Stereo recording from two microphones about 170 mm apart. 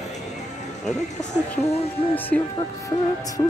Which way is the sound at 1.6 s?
35° left (ahead or behind).